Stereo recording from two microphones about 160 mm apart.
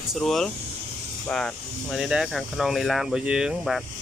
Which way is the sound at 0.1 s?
Centre (ahead or behind).